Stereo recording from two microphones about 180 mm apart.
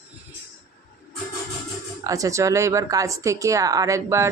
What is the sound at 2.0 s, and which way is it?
Speech, 20° right (ahead or behind).